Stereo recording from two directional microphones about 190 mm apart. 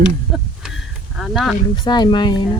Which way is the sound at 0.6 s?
Centre (ahead or behind).